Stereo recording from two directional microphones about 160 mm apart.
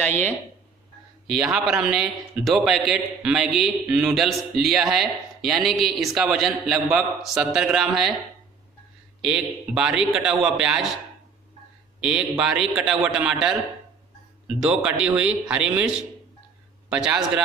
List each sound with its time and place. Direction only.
0.0 s speech: 10° left (ahead or behind)
1.2 s a man's voice: 5° right (ahead or behind)
9.2 s a man's voice: 5° right (ahead or behind)
12.0 s a man's voice: 5° right (ahead or behind)
14.6 s a man's voice: 5° right (ahead or behind)